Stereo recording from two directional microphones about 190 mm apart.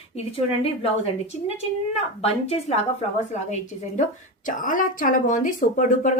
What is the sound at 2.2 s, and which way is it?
Speech, 35° left (ahead or behind).